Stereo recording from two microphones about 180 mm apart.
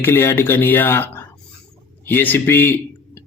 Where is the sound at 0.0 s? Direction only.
15° left (ahead or behind).